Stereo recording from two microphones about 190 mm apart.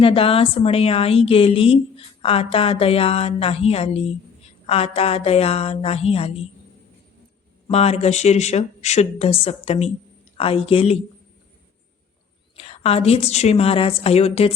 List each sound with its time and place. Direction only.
0.0 s a woman's voice: 30° left (ahead or behind)
7.7 s a woman's voice: 30° left (ahead or behind)
12.5 s a woman's voice: 30° left (ahead or behind)